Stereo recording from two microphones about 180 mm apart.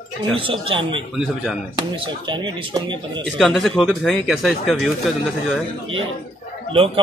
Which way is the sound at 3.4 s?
Centre (ahead or behind).